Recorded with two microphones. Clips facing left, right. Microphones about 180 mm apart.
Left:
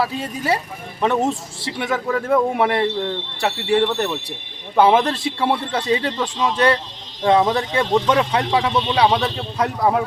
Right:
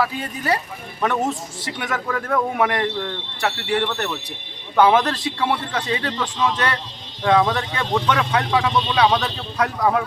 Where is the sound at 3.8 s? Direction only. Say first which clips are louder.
Left 4 dB; 15° left (ahead or behind).